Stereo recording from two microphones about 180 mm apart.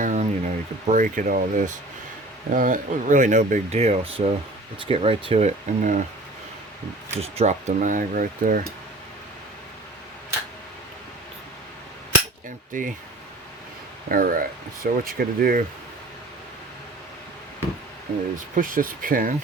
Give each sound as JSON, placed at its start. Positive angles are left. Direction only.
{"t": 0.0, "sound": "speech", "side_deg": -45}
{"t": 7.2, "sound": "speech", "side_deg": -35}
{"t": 12.7, "sound": "speech", "side_deg": -45}
{"t": 14.1, "sound": "speech", "side_deg": -50}
{"t": 18.5, "sound": "speech", "side_deg": -50}